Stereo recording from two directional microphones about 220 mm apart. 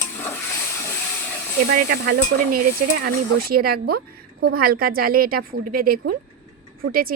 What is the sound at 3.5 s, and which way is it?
A woman's voice, 45° right (ahead or behind).